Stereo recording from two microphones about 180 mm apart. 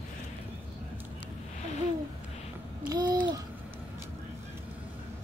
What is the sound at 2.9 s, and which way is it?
Babbling, 25° right (ahead or behind).